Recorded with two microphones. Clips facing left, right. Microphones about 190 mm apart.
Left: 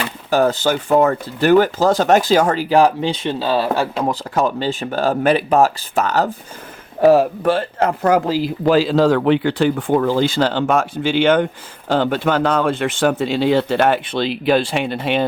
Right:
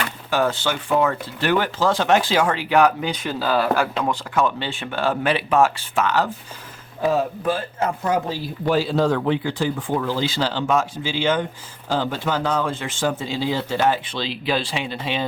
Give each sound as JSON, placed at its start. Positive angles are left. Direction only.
{"t": 0.3, "sound": "speech", "side_deg": 40}
{"t": 4.0, "sound": "speech", "side_deg": 40}
{"t": 7.0, "sound": "speech", "side_deg": 75}